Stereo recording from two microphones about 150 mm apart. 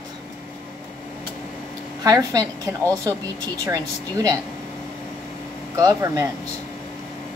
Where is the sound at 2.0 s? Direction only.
25° right (ahead or behind).